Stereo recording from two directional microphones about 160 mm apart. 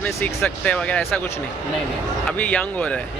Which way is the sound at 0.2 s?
5° left (ahead or behind).